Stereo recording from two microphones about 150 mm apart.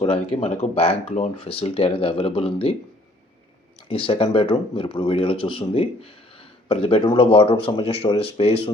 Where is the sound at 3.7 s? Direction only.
35° left (ahead or behind).